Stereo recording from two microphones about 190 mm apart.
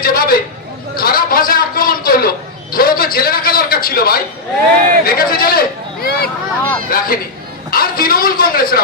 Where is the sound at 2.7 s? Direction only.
50° left (ahead or behind).